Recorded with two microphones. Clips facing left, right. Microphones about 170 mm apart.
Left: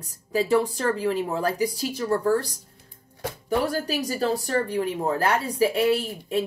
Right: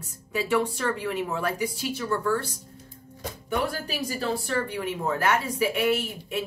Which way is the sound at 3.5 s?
40° left (ahead or behind).